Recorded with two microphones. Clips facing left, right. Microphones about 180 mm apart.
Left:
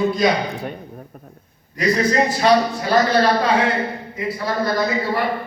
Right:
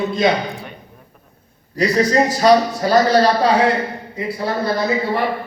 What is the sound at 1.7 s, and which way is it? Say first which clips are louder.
A man's voice: right 2 dB; 40° right (ahead or behind).